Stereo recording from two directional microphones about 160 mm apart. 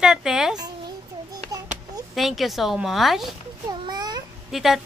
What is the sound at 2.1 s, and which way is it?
A woman's voice, centre (ahead or behind).